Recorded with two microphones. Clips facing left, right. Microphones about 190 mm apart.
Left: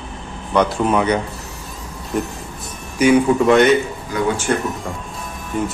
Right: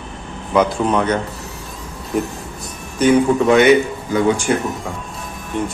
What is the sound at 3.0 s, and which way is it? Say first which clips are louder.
Speech: even; 10° left (ahead or behind).